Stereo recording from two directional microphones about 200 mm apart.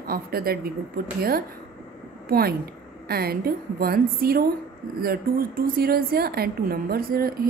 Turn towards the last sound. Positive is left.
turn(degrees=-50)  # may be behind; listen again after turning